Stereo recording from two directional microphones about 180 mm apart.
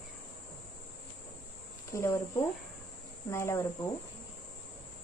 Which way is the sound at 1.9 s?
15° left (ahead or behind).